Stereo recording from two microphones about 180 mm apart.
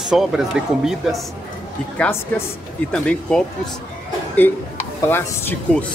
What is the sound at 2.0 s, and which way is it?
Speech, 15° left (ahead or behind).